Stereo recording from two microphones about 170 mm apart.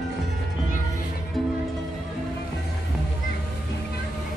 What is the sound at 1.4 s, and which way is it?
Music, centre (ahead or behind).